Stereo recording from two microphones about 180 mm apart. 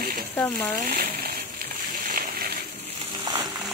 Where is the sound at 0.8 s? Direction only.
60° right (ahead or behind).